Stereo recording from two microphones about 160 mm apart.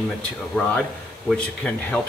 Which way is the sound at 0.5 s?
5° left (ahead or behind).